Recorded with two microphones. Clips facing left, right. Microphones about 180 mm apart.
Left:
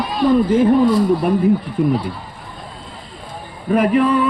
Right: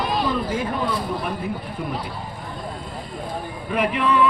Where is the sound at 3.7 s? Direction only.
40° left (ahead or behind).